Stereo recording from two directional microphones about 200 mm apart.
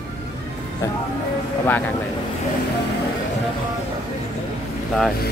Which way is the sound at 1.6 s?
10° left (ahead or behind).